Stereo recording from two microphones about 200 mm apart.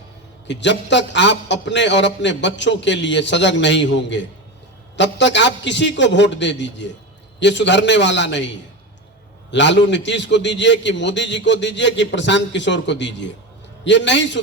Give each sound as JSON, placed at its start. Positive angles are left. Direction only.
{"t": 0.4, "sound": "a man's voice", "side_deg": 60}
{"t": 9.5, "sound": "a man's voice", "side_deg": 60}